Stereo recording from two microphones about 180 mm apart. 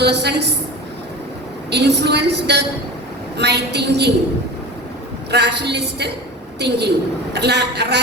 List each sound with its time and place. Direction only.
0.0 s a woman's voice: 70° right (ahead or behind)
1.7 s a woman's voice: 70° right (ahead or behind)
5.3 s a woman's voice: 70° right (ahead or behind)